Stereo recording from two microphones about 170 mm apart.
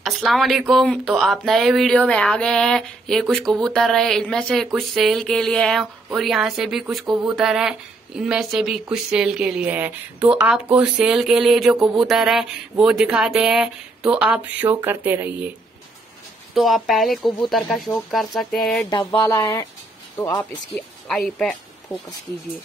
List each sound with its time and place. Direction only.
0.0 s speech: centre (ahead or behind)
16.5 s speech: centre (ahead or behind)
18.9 s speech: 25° left (ahead or behind)
20.7 s speech: centre (ahead or behind)